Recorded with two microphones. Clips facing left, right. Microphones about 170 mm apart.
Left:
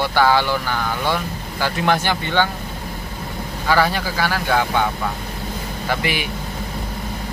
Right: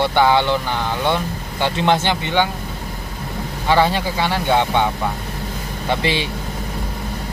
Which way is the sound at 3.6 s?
25° right (ahead or behind).